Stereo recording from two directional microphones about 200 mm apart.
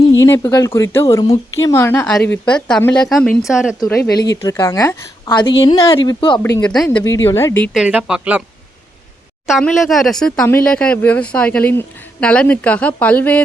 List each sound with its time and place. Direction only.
0.2 s speech: 15° left (ahead or behind)
4.1 s a woman's voice: 20° left (ahead or behind)
6.4 s speech: 10° left (ahead or behind)
7.7 s speech: 5° right (ahead or behind)
9.5 s speech: centre (ahead or behind)